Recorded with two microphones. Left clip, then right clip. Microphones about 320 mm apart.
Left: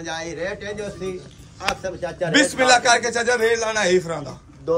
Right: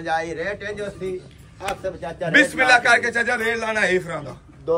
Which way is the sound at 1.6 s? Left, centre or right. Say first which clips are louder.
Left 2 dB; left.